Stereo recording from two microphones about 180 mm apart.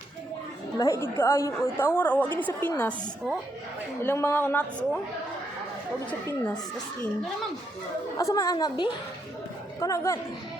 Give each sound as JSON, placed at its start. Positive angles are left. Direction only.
{"t": 0.8, "sound": "a woman's voice", "side_deg": 15}
{"t": 6.1, "sound": "a woman's voice", "side_deg": 10}
{"t": 8.2, "sound": "a woman's voice", "side_deg": 20}